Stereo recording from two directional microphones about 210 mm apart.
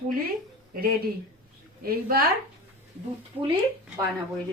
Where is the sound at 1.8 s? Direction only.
45° right (ahead or behind).